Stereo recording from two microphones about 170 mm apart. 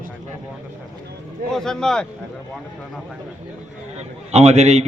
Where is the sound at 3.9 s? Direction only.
40° right (ahead or behind).